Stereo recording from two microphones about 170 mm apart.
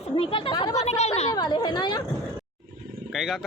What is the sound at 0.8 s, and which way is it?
Speech, 40° left (ahead or behind).